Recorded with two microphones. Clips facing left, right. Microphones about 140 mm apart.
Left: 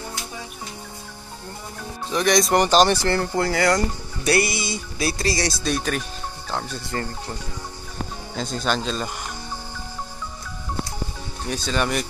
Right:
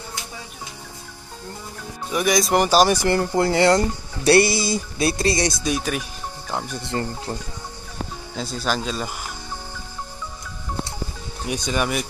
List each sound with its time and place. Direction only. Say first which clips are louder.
2.0 s speech: left 1 dB; 5° right (ahead or behind); by 5.0 s 35° right (ahead or behind)
5.0 s speech: right 3 dB; 25° right (ahead or behind)
8.4 s speech: left 1 dB; 5° right (ahead or behind)
11.4 s speech: right 1 dB; 15° right (ahead or behind)